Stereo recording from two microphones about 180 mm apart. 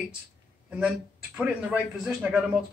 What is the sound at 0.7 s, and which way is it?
Speech, 5° right (ahead or behind).